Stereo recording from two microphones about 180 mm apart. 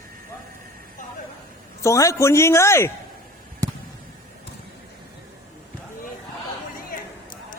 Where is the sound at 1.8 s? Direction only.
15° left (ahead or behind).